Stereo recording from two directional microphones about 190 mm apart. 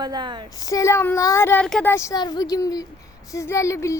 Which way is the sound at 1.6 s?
Centre (ahead or behind).